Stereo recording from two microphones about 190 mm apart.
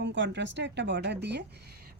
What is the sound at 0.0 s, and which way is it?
Speech, 70° right (ahead or behind).